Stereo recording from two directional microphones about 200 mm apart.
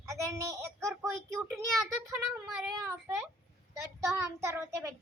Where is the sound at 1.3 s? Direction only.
Centre (ahead or behind).